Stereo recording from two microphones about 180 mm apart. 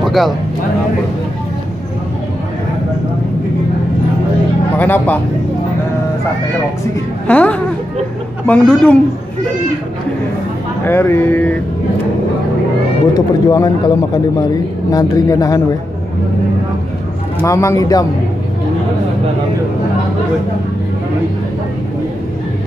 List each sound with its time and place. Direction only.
0.0 s vehicle: centre (ahead or behind)
4.7 s speech: 10° left (ahead or behind)
7.2 s speech: 10° left (ahead or behind)
10.9 s speech: 10° left (ahead or behind)
13.1 s speech: 20° left (ahead or behind)
17.5 s speech: 15° left (ahead or behind)